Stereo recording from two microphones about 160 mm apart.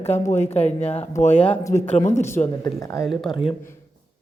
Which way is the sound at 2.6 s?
20° left (ahead or behind).